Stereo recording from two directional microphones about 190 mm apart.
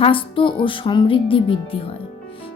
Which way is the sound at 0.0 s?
25° left (ahead or behind).